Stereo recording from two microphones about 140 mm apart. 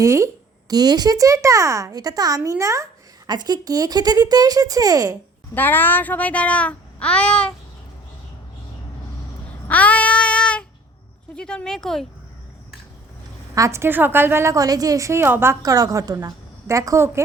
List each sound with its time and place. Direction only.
0.0 s a woman's voice: 20° right (ahead or behind)
5.5 s speech: 15° left (ahead or behind)
9.6 s child singing: 10° left (ahead or behind)
11.3 s speech: 5° left (ahead or behind)
13.6 s a woman's voice: 20° right (ahead or behind)